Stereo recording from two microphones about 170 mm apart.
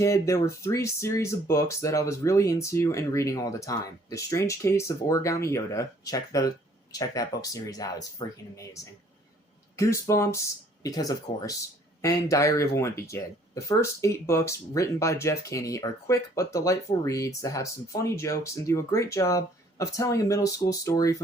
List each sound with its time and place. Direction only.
0.0 s speech: 15° left (ahead or behind)